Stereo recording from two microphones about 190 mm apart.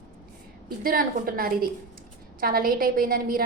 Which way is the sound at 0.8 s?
50° right (ahead or behind).